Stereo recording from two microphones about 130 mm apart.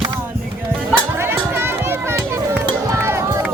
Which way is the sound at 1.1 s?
20° right (ahead or behind).